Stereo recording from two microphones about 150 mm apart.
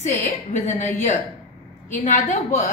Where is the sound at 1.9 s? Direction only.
55° left (ahead or behind).